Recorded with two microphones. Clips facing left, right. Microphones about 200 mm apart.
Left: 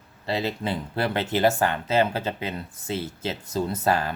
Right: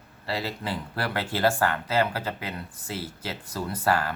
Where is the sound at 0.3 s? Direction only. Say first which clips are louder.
Left 4 dB; 20° left (ahead or behind).